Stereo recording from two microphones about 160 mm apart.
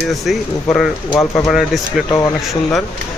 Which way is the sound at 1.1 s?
20° left (ahead or behind).